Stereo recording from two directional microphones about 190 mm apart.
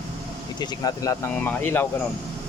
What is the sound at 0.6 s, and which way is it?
Speech, 20° left (ahead or behind).